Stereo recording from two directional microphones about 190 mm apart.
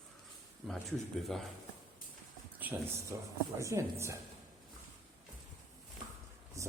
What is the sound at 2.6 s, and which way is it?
Speech, 10° right (ahead or behind).